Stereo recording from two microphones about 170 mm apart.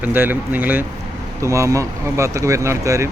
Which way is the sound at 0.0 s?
10° right (ahead or behind).